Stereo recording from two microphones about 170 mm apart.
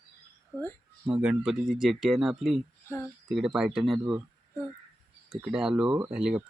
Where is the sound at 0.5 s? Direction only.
10° right (ahead or behind).